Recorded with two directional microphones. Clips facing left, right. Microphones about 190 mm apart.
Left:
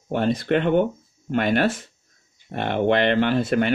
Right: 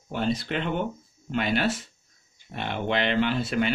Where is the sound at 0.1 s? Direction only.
55° left (ahead or behind).